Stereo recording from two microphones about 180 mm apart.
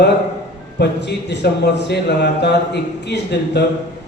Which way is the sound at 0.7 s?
70° left (ahead or behind).